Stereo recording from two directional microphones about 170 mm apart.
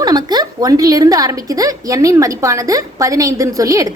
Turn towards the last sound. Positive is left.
turn(degrees=-20)  # may be behind; listen again after turning